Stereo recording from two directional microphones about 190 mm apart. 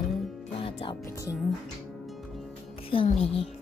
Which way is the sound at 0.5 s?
30° left (ahead or behind).